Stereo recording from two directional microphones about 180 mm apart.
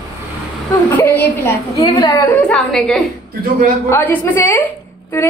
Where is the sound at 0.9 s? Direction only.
10° left (ahead or behind).